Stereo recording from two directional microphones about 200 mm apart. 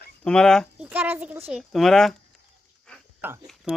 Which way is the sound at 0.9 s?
10° right (ahead or behind).